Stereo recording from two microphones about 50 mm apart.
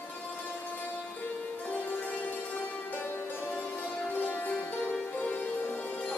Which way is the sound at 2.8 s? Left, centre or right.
Left.